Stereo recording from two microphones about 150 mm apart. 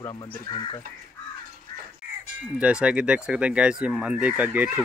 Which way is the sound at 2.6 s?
5° right (ahead or behind).